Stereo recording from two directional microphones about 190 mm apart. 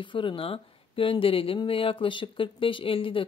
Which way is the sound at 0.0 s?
25° left (ahead or behind).